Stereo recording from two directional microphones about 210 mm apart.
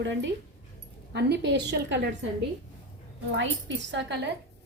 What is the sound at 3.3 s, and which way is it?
Speech, 60° right (ahead or behind).